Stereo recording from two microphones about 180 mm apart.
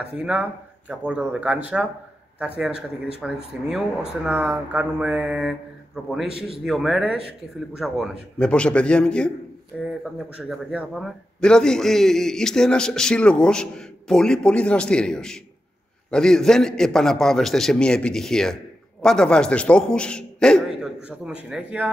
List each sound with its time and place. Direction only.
0.0 s a man's voice: 5° right (ahead or behind)